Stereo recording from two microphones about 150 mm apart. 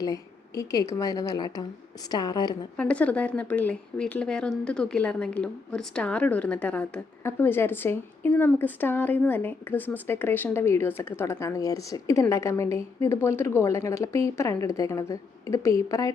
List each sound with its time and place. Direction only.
0.0 s a woman's voice: 20° left (ahead or behind)
2.7 s a woman's voice: 10° left (ahead or behind); by 16.1 s 25° left (ahead or behind)